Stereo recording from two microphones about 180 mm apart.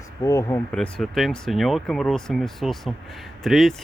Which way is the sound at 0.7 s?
5° left (ahead or behind).